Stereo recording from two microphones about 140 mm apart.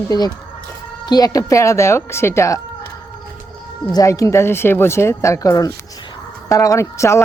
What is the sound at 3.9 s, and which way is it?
Speech, 25° left (ahead or behind).